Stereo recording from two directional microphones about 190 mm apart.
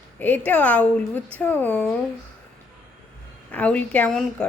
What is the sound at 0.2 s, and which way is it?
A woman's voice, 10° left (ahead or behind).